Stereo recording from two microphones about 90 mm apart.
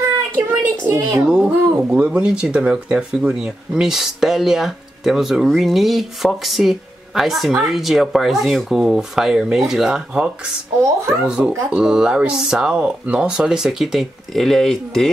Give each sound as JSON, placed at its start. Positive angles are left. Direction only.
{"t": 0.0, "sound": "a child's voice", "side_deg": -25}
{"t": 1.2, "sound": "speech", "side_deg": -10}